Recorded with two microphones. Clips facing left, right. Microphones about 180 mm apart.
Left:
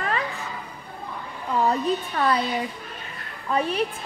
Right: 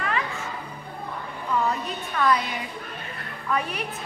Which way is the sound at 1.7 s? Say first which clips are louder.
Left 6 dB; 30° left (ahead or behind).